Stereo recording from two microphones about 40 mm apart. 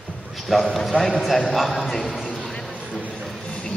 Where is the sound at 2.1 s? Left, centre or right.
Centre.